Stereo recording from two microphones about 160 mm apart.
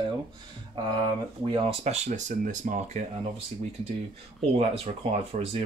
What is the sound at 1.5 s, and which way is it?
Speech, 40° right (ahead or behind).